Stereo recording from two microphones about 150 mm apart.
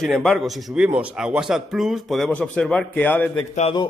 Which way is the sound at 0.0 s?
5° left (ahead or behind).